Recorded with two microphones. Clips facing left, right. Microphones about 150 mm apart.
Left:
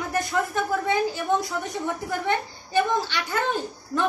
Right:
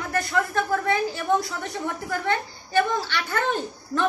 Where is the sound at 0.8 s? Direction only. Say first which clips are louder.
Even; 15° left (ahead or behind).